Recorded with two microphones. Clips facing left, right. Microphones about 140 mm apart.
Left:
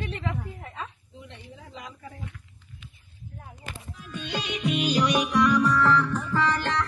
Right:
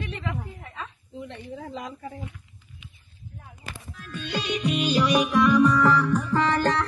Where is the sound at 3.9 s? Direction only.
15° left (ahead or behind).